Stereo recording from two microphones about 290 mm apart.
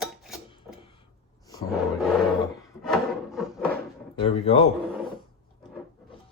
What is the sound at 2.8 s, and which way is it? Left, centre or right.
Wood, centre.